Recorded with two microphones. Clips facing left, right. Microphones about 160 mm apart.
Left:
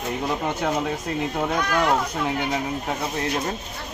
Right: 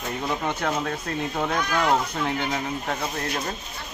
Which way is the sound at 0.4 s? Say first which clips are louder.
Left 2 dB; 10° left (ahead or behind).